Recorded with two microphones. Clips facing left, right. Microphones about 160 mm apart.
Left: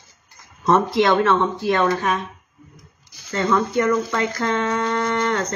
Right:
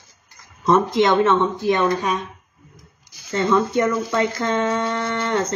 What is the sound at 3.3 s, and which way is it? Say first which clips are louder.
Speech: right 1 dB; 20° right (ahead or behind).